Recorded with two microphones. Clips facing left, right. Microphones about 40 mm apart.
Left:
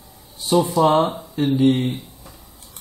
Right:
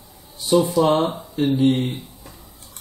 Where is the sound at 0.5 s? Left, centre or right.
Centre.